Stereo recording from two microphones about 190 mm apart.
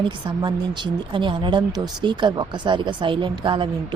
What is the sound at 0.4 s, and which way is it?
Speech, 25° right (ahead or behind).